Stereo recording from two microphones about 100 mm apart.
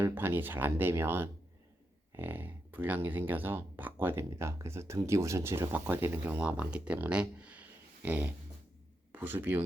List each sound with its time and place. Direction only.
0.0 s speech: 20° right (ahead or behind)
8.0 s a sound: 15° right (ahead or behind)
9.1 s speech: 20° right (ahead or behind)